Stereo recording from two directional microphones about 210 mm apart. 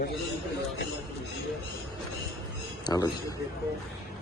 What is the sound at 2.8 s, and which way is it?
Speech, 20° left (ahead or behind).